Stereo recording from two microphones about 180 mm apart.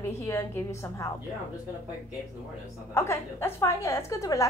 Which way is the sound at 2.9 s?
15° left (ahead or behind).